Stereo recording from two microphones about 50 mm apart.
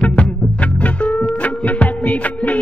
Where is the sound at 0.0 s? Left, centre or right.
Left.